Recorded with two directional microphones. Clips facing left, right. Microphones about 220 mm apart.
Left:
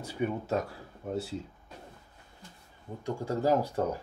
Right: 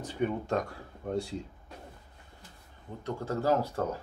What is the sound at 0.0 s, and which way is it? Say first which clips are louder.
Speech: right 1 dB; 10° left (ahead or behind).